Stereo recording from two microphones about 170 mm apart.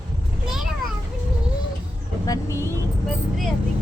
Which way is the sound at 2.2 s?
20° left (ahead or behind).